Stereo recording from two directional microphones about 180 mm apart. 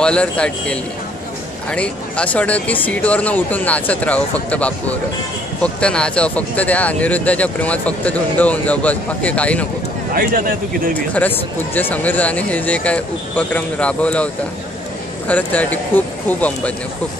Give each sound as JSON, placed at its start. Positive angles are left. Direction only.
{"t": 0.0, "sound": "speech", "side_deg": 5}
{"t": 10.1, "sound": "speech", "side_deg": -50}
{"t": 11.0, "sound": "speech", "side_deg": 10}